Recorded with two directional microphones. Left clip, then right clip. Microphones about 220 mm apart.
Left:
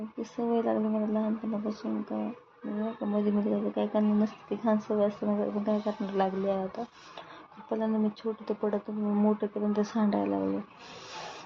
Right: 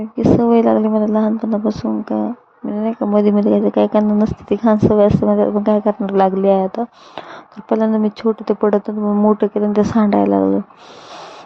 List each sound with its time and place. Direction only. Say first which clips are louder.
0.2 s speech: right 18 dB; 40° right (ahead or behind)